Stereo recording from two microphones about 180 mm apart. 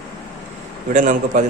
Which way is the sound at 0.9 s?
45° right (ahead or behind).